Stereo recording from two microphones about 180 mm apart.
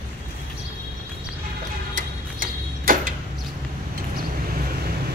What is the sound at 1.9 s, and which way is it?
Tick-tock, 50° right (ahead or behind).